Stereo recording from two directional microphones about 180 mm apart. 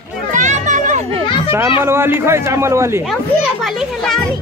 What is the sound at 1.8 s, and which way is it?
A man's voice, 15° right (ahead or behind).